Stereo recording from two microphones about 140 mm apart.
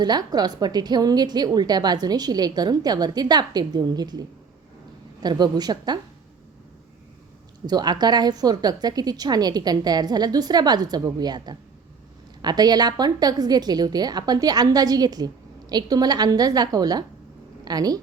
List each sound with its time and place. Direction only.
0.0 s a woman's voice: 30° right (ahead or behind)
7.7 s a woman's voice: 30° right (ahead or behind)